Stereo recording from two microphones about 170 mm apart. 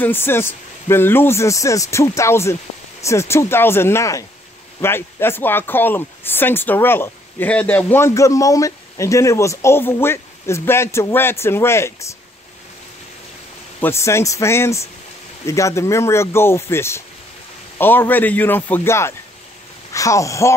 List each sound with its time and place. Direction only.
0.0 s speech: 10° left (ahead or behind)
13.7 s speech: 15° left (ahead or behind)